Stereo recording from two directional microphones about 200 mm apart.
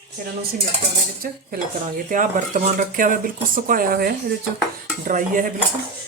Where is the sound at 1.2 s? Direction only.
45° right (ahead or behind).